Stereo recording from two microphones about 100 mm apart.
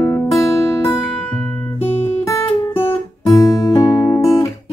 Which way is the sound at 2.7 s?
25° left (ahead or behind).